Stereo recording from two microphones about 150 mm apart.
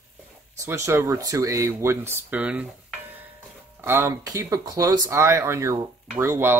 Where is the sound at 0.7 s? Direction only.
20° right (ahead or behind).